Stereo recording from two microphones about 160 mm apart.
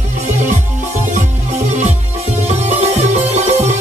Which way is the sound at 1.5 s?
45° right (ahead or behind).